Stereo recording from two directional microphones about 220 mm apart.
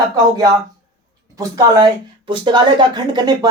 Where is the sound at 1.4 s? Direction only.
20° right (ahead or behind).